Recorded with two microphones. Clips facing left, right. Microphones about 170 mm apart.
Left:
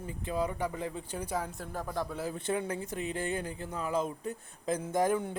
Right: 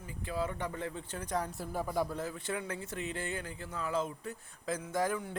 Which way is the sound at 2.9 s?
15° left (ahead or behind).